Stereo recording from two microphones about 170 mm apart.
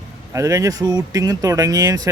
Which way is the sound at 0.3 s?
20° right (ahead or behind).